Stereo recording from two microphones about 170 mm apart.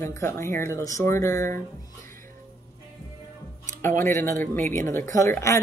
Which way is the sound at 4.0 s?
15° left (ahead or behind).